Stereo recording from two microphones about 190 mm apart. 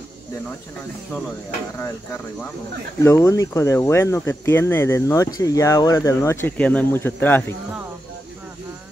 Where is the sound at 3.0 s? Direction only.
15° left (ahead or behind).